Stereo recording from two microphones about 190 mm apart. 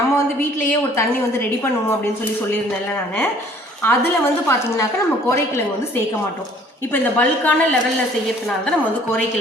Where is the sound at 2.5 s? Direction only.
10° left (ahead or behind).